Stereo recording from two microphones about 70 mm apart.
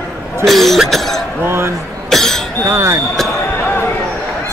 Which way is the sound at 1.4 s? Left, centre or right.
Right.